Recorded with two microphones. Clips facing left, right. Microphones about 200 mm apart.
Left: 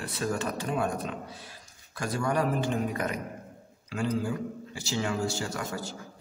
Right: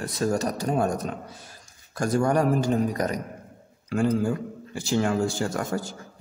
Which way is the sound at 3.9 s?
50° right (ahead or behind).